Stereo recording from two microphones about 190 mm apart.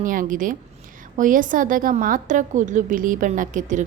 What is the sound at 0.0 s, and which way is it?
A woman's voice, 45° right (ahead or behind).